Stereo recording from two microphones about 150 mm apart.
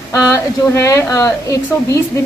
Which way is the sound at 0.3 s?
20° left (ahead or behind).